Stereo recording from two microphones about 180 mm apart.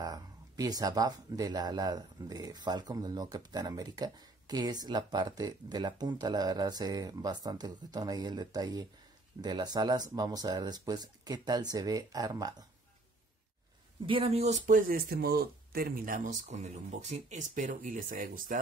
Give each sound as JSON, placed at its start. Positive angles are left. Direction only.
{"t": 0.0, "sound": "speech", "side_deg": -20}
{"t": 14.0, "sound": "speech", "side_deg": -30}
{"t": 16.4, "sound": "speech", "side_deg": -40}